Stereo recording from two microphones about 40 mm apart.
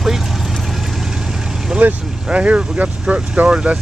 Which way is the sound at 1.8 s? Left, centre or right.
Right.